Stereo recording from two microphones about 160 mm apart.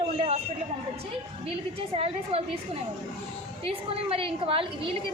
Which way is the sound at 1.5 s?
40° right (ahead or behind).